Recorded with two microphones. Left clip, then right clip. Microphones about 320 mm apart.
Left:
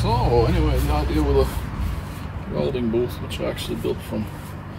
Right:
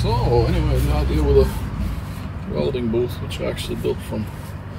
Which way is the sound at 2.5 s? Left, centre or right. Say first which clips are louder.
Right 1 dB; centre.